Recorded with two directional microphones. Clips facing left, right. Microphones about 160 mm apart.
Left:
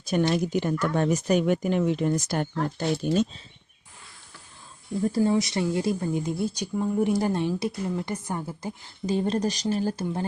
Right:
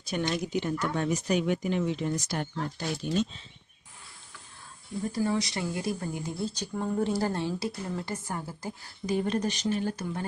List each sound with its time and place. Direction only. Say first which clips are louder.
0.0 s speech: left 6 dB; 50° left (ahead or behind)
5.1 s a woman's voice: left 5 dB; 25° left (ahead or behind)